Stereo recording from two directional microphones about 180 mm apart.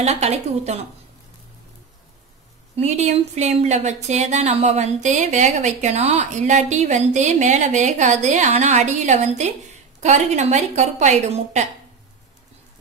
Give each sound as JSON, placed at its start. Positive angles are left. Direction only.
{"t": 0.0, "sound": "speech", "side_deg": -35}
{"t": 2.7, "sound": "speech", "side_deg": -35}